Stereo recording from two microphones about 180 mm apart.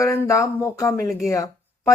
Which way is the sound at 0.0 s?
15° left (ahead or behind).